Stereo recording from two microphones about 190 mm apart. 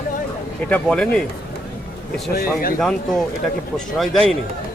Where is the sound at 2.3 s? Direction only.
50° left (ahead or behind).